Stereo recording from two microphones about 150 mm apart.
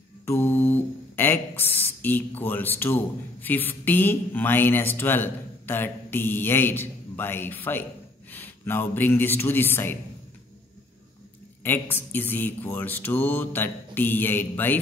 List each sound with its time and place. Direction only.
0.2 s a man's voice: 15° left (ahead or behind)
11.6 s mantra: 15° left (ahead or behind)